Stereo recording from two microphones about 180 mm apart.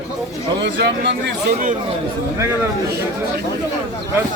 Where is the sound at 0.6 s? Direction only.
75° right (ahead or behind).